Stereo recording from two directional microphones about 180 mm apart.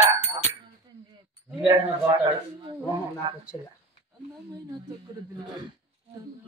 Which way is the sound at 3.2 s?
20° right (ahead or behind).